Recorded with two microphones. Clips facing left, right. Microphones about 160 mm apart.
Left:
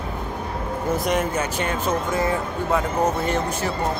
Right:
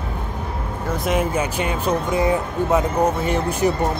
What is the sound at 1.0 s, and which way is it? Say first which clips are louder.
Speech: right 5 dB; 5° right (ahead or behind).